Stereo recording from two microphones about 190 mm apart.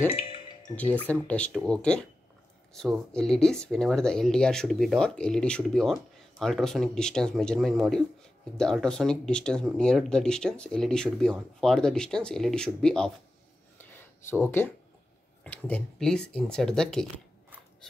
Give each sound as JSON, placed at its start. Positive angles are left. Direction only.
{"t": 0.1, "sound": "music", "side_deg": 30}
{"t": 0.7, "sound": "speech", "side_deg": 10}
{"t": 14.4, "sound": "speech", "side_deg": 10}